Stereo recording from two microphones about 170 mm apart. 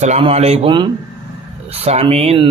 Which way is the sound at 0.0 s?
35° right (ahead or behind).